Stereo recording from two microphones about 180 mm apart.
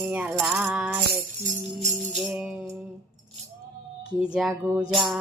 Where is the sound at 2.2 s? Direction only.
5° right (ahead or behind).